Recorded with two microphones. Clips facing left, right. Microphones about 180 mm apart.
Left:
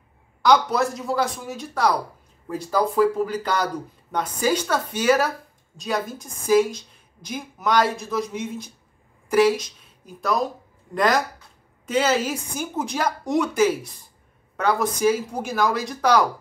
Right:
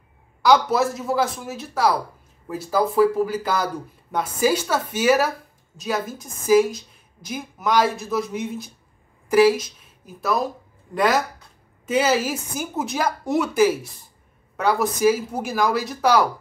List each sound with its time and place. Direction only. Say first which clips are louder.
0.4 s a woman's voice: right 1 dB; 5° right (ahead or behind)